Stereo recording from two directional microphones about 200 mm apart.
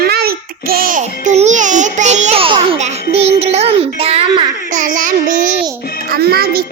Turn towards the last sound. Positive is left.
turn(degrees=-50)  # may be behind; listen again after turning